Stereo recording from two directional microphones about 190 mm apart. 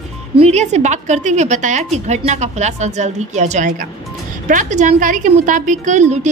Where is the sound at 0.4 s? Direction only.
35° right (ahead or behind).